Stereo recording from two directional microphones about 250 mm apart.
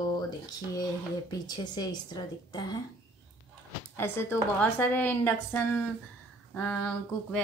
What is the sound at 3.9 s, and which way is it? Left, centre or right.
A woman's voice, centre.